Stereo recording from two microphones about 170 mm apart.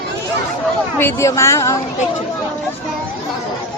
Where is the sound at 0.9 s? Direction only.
15° left (ahead or behind).